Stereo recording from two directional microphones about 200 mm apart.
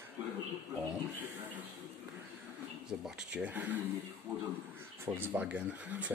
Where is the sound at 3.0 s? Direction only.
5° right (ahead or behind).